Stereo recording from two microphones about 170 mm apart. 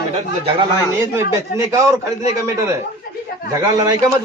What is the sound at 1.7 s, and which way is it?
A man's voice, 15° right (ahead or behind).